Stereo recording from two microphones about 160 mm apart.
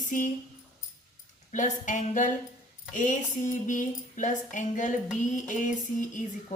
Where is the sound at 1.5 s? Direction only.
50° left (ahead or behind).